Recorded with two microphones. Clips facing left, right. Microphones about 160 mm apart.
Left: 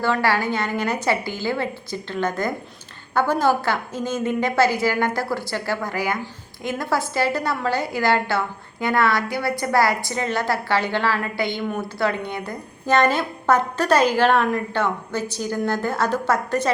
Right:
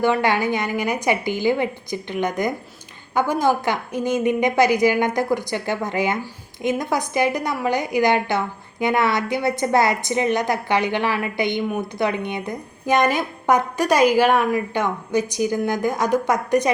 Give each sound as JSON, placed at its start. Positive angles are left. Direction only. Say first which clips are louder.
{"t": 0.0, "sound": "a woman's voice", "louder": "right 2 dB", "side_deg": -20}